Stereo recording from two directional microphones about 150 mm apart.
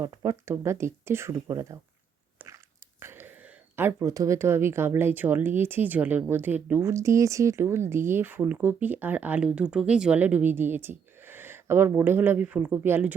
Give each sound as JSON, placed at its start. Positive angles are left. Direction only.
{"t": 0.0, "sound": "speech", "side_deg": -20}
{"t": 2.4, "sound": "biting", "side_deg": -10}
{"t": 3.0, "sound": "speech", "side_deg": -15}